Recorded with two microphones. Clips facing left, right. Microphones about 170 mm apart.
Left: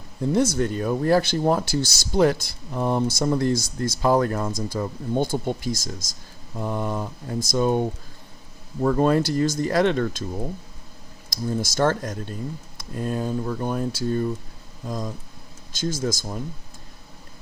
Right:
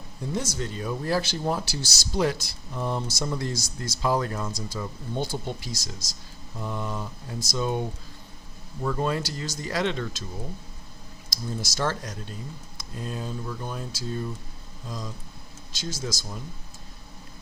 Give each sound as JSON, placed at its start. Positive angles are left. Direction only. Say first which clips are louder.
{"t": 0.3, "sound": "speech", "louder": "left 9 dB", "side_deg": 55}
{"t": 11.6, "sound": "speech", "louder": "left 7 dB", "side_deg": 50}